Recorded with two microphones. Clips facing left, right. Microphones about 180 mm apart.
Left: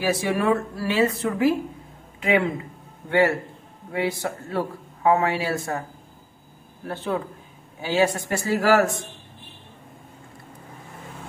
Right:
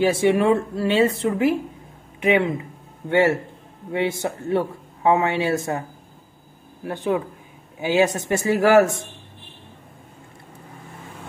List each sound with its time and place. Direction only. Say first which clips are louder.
0.0 s speech: right 5 dB; 25° right (ahead or behind)
2.1 s a sound: right 3 dB; 20° right (ahead or behind)
3.1 s speech: right 2 dB; 25° right (ahead or behind)
6.9 s speech: right 4 dB; 15° right (ahead or behind)